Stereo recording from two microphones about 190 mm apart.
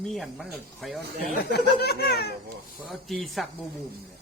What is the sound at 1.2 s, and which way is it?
Speech, 55° left (ahead or behind).